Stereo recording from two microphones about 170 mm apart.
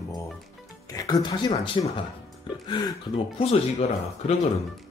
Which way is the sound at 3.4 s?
40° left (ahead or behind).